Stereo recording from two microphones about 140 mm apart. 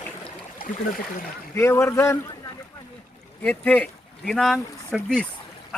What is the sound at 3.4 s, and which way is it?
Speech, 10° left (ahead or behind).